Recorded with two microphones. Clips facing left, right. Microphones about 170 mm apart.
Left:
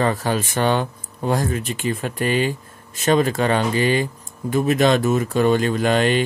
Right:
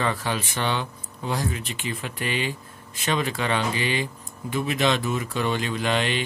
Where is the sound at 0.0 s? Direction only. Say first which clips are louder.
Left 6 dB; 40° left (ahead or behind).